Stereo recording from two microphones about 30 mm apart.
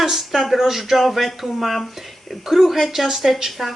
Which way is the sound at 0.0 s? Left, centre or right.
Centre.